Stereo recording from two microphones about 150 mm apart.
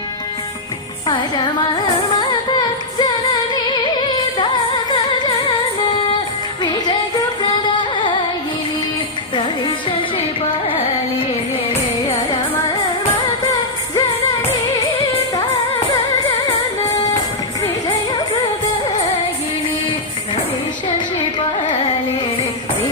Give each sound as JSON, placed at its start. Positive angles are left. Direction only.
{"t": 1.0, "sound": "music", "side_deg": 30}
{"t": 6.6, "sound": "music", "side_deg": 30}
{"t": 10.7, "sound": "carnatic music", "side_deg": 35}
{"t": 12.0, "sound": "music", "side_deg": 35}
{"t": 16.8, "sound": "music", "side_deg": 25}